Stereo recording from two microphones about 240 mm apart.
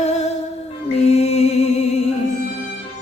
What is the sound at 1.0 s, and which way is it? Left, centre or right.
Mantra, left.